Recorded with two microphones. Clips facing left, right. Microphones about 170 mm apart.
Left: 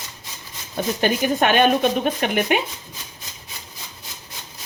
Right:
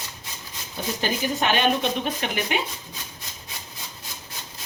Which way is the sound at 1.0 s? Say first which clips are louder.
Left 6 dB; 55° left (ahead or behind).